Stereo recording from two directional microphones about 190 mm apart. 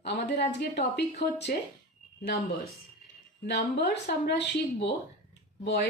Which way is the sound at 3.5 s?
60° left (ahead or behind).